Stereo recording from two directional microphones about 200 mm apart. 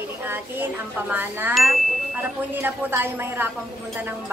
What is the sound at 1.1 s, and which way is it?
Chime, 10° right (ahead or behind).